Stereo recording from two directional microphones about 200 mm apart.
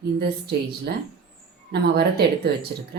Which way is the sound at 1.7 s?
55° right (ahead or behind).